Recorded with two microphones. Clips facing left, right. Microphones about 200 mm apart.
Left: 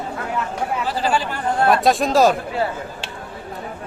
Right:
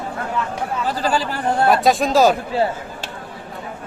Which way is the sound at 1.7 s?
Centre (ahead or behind).